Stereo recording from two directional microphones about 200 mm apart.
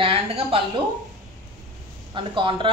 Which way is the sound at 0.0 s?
30° right (ahead or behind).